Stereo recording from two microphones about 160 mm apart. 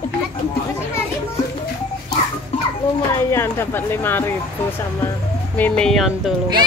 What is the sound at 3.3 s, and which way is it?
Speech, 15° left (ahead or behind).